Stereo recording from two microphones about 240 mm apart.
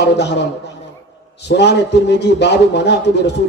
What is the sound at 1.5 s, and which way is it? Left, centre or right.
A man's voice, left.